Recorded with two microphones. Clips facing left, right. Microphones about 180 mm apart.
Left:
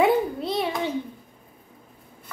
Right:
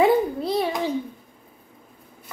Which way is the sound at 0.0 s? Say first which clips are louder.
Right 2 dB; centre (ahead or behind).